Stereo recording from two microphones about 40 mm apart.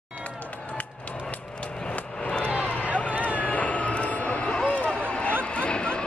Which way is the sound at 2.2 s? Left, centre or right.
Left.